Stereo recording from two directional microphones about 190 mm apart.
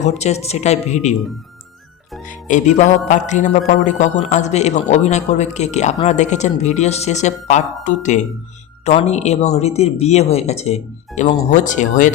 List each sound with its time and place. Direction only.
0.0 s speech: 35° left (ahead or behind)
2.2 s speech: 45° left (ahead or behind)